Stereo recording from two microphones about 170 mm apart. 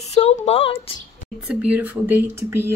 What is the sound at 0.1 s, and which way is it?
Speech, 40° left (ahead or behind).